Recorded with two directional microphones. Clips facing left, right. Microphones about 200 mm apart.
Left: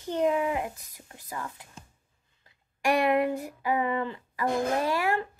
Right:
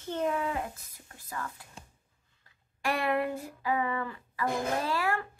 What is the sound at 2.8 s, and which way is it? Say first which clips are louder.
Speech: left 5 dB; 15° left (ahead or behind).